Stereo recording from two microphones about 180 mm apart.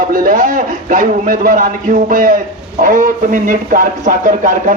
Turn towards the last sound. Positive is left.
turn(degrees=-45)  # may be behind; listen again after turning